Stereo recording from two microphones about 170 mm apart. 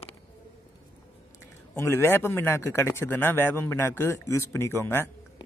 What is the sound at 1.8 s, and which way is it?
A man's voice, 15° left (ahead or behind).